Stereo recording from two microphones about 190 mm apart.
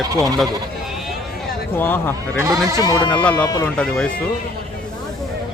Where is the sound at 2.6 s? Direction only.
15° right (ahead or behind).